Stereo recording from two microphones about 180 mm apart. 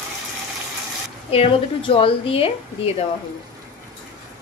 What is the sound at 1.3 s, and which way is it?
A woman's voice, 30° left (ahead or behind).